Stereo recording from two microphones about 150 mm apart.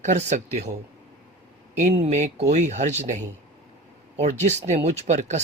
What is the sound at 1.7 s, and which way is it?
Speech, 50° right (ahead or behind).